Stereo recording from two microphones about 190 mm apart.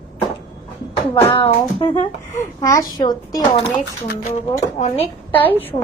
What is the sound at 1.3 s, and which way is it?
Speech, 30° left (ahead or behind).